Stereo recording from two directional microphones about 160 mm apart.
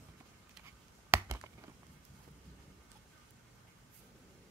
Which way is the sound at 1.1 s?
15° right (ahead or behind).